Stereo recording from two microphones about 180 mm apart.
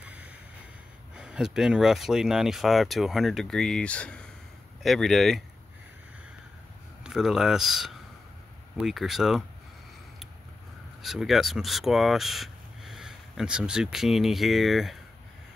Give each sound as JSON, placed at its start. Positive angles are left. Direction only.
{"t": 0.0, "sound": "a sound", "side_deg": -5}
{"t": 1.1, "sound": "speech", "side_deg": -5}
{"t": 7.0, "sound": "speech", "side_deg": -5}
{"t": 11.0, "sound": "speech", "side_deg": 0}